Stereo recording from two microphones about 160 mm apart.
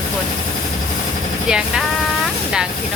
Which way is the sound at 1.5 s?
5° right (ahead or behind).